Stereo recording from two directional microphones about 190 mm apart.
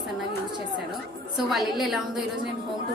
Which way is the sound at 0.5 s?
25° right (ahead or behind).